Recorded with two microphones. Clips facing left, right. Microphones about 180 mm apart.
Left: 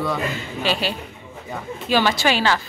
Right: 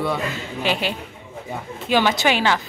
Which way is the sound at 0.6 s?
20° right (ahead or behind).